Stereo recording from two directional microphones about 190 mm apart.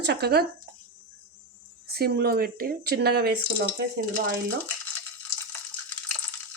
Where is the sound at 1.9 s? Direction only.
55° right (ahead or behind).